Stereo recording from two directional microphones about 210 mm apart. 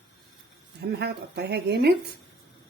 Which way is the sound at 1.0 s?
50° right (ahead or behind).